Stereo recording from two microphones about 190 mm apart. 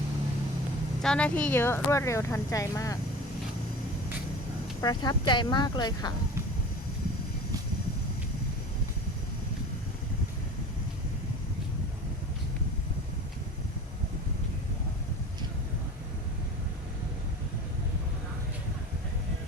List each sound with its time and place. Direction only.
1.0 s speech: 5° left (ahead or behind)
4.8 s speech: 20° left (ahead or behind)